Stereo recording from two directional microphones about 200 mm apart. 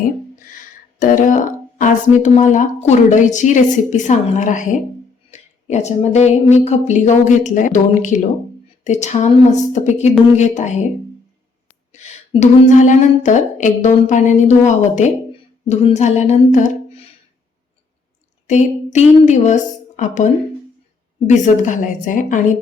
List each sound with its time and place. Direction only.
0.9 s speech: 40° left (ahead or behind)
11.9 s speech: 35° left (ahead or behind)
18.4 s speech: 35° left (ahead or behind)
21.2 s speech: 35° left (ahead or behind)